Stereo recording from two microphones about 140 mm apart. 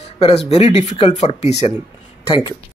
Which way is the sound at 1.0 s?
40° left (ahead or behind).